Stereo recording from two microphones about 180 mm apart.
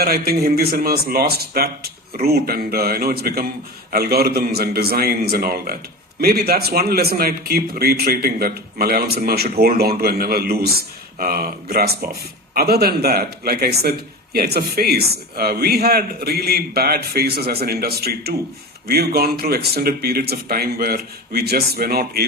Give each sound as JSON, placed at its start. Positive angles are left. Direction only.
{"t": 0.0, "sound": "a man's voice", "side_deg": -60}